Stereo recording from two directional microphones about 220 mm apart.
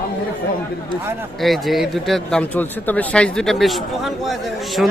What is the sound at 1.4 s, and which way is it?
Speech, centre (ahead or behind).